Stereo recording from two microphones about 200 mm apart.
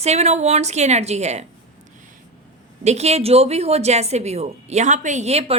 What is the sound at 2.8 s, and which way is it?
A woman's voice, 35° right (ahead or behind).